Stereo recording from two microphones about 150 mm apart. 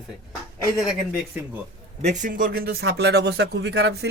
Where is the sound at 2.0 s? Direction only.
55° right (ahead or behind); by 4.1 s 90° right.